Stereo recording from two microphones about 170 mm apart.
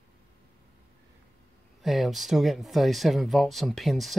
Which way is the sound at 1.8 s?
Centre (ahead or behind).